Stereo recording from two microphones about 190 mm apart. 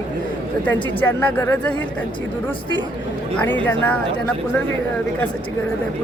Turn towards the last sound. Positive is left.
turn(degrees=10)  # may be behind; listen again after turning